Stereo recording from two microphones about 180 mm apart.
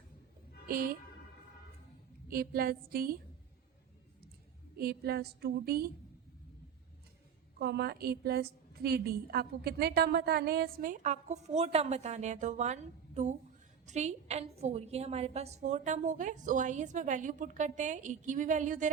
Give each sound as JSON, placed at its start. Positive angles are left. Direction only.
{"t": 0.7, "sound": "a woman's voice", "side_deg": -50}
{"t": 2.2, "sound": "a woman's voice", "side_deg": -55}
{"t": 4.8, "sound": "a woman's voice", "side_deg": -60}
{"t": 7.6, "sound": "a woman's voice", "side_deg": -65}